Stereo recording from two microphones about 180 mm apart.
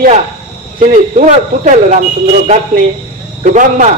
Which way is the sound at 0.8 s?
40° right (ahead or behind).